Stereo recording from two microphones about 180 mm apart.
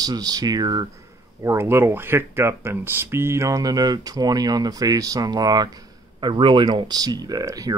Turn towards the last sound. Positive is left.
turn(degrees=-20)  # may be behind; listen again after turning